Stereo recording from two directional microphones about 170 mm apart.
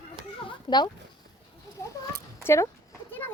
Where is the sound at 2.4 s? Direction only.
15° left (ahead or behind).